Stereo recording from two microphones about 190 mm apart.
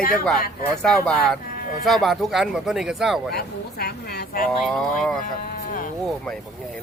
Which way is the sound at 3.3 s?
55° left (ahead or behind).